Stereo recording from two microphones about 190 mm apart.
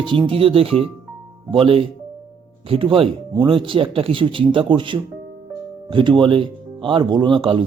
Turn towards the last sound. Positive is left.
turn(degrees=-25)  # may be behind; listen again after turning